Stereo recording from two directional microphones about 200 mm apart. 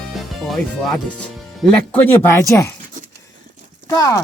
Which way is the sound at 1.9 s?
10° left (ahead or behind).